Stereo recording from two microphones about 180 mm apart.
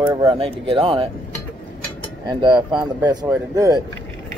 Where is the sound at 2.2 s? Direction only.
25° right (ahead or behind).